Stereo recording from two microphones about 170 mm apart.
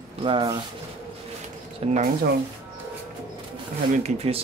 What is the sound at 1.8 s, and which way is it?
Speech, 35° right (ahead or behind).